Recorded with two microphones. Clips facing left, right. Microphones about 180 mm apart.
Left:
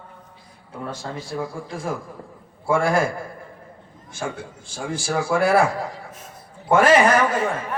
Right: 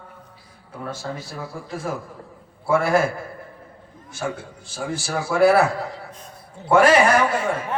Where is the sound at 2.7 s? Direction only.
5° right (ahead or behind).